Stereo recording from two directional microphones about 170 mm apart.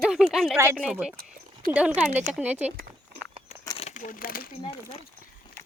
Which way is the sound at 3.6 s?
30° left (ahead or behind).